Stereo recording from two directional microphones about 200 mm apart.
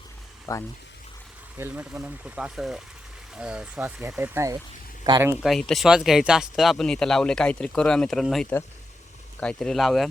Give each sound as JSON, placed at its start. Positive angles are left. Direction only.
{"t": 0.5, "sound": "speech", "side_deg": 15}
{"t": 1.5, "sound": "speech", "side_deg": -10}
{"t": 5.4, "sound": "speech", "side_deg": 0}